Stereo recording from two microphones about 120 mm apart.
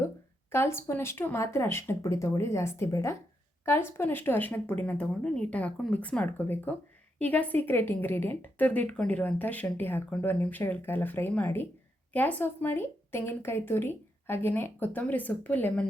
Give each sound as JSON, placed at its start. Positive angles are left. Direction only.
{"t": 0.5, "sound": "a woman's voice", "side_deg": 20}